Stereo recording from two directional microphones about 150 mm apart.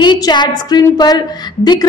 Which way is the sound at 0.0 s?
30° left (ahead or behind).